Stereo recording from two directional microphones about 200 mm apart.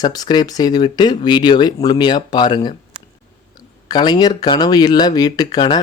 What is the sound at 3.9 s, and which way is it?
Speech, 20° left (ahead or behind).